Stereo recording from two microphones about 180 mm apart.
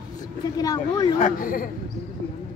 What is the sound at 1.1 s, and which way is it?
Speech, 50° left (ahead or behind).